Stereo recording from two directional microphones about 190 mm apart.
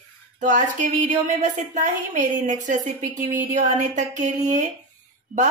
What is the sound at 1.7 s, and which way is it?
Speech, 40° right (ahead or behind).